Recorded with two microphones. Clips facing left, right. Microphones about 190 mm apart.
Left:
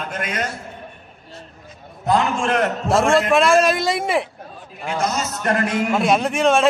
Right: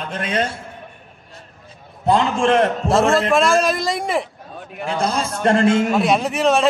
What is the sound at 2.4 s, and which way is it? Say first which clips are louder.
Speech: right 4 dB; 30° right (ahead or behind).